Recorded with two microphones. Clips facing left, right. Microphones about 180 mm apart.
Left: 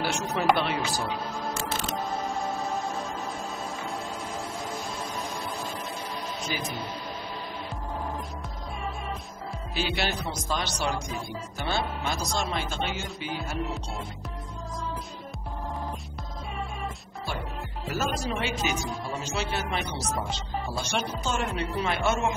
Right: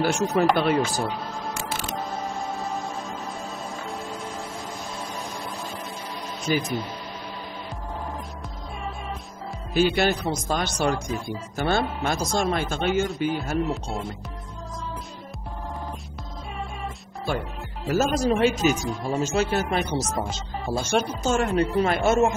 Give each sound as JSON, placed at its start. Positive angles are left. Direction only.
{"t": 0.0, "sound": "speech", "side_deg": -45}
{"t": 6.5, "sound": "speech", "side_deg": -50}
{"t": 9.8, "sound": "speech", "side_deg": -50}
{"t": 17.8, "sound": "speech", "side_deg": -45}